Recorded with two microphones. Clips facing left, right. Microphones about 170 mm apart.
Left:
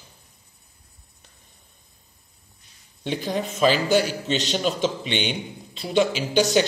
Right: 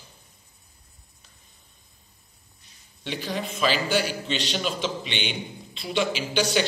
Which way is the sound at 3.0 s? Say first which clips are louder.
Left 4 dB; 45° left (ahead or behind).